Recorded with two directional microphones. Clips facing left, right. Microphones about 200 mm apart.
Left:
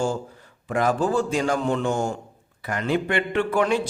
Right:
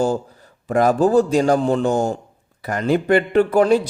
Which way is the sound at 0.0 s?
40° right (ahead or behind).